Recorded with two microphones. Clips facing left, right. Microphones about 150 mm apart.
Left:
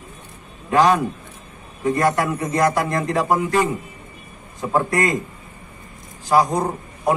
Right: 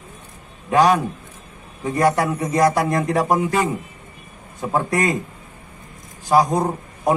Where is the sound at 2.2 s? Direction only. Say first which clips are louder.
Right 2 dB; 10° right (ahead or behind).